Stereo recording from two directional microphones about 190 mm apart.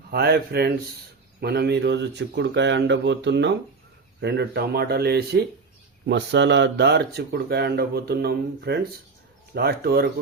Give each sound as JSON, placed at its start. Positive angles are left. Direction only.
{"t": 0.1, "sound": "speech", "side_deg": -60}